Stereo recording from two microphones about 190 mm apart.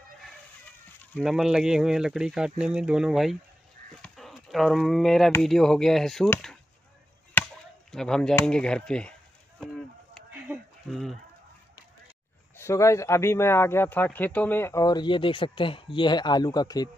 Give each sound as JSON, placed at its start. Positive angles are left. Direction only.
{"t": 1.1, "sound": "speech", "side_deg": 0}
{"t": 4.0, "sound": "chop", "side_deg": 0}
{"t": 5.3, "sound": "speech", "side_deg": 0}
{"t": 7.4, "sound": "chop", "side_deg": 10}
{"t": 7.9, "sound": "speech", "side_deg": 5}
{"t": 10.5, "sound": "a sound", "side_deg": 0}
{"t": 12.5, "sound": "speech", "side_deg": 15}